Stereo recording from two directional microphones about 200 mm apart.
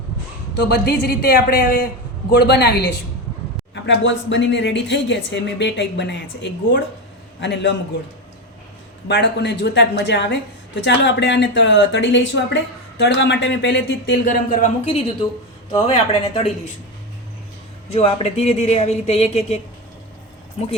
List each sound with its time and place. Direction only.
0.5 s a woman's voice: 55° left (ahead or behind)
9.0 s speech: 60° left (ahead or behind)
14.5 s speech: 35° left (ahead or behind)
17.8 s speech: 30° left (ahead or behind)